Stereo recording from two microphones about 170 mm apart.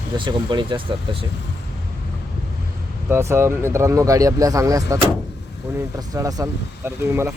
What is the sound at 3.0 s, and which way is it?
Speech, 15° right (ahead or behind).